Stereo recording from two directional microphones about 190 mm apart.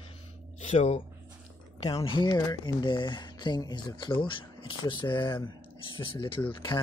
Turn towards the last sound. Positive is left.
turn(degrees=25)  # may be behind; listen again after turning